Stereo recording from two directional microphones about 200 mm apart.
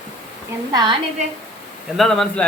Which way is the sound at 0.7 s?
20° right (ahead or behind).